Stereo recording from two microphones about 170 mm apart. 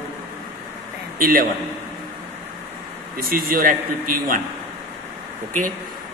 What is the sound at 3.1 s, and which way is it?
Speech, 60° right (ahead or behind).